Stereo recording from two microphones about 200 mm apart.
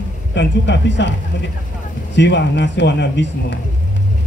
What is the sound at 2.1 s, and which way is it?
A man's voice, 60° left (ahead or behind).